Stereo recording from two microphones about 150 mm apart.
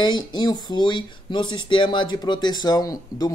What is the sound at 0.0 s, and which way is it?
A man's voice, 30° left (ahead or behind).